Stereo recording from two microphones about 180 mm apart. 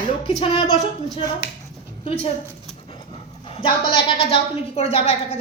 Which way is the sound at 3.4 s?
30° left (ahead or behind).